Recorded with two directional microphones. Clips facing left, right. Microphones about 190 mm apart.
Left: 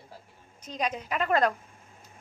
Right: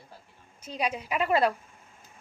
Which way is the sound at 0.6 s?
10° right (ahead or behind).